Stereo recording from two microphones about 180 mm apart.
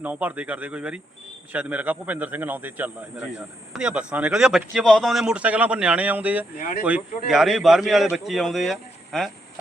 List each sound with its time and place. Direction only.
0.0 s speech: 10° right (ahead or behind)
6.6 s speech: 45° left (ahead or behind)
7.3 s speech: centre (ahead or behind)